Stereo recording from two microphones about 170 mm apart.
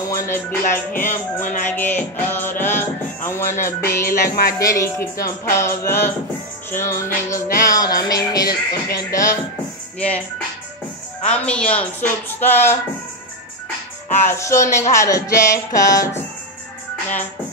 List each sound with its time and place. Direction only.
0.1 s music: 15° left (ahead or behind)
0.7 s music: 50° left (ahead or behind)
1.6 s music: 10° left (ahead or behind)
4.0 s music: 55° left (ahead or behind)
4.6 s music: 20° left (ahead or behind)
7.6 s speech: 20° left (ahead or behind)
8.5 s music: 65° left (ahead or behind)
9.9 s music: 10° left (ahead or behind)
11.2 s music: 5° left (ahead or behind)
14.2 s music: 15° left (ahead or behind)
14.8 s speech: 20° left (ahead or behind)